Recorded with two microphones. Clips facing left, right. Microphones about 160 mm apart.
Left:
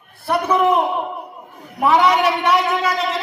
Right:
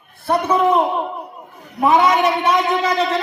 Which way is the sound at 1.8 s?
25° right (ahead or behind).